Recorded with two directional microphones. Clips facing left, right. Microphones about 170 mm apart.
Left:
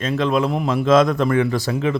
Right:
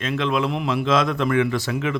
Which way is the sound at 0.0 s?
40° left (ahead or behind).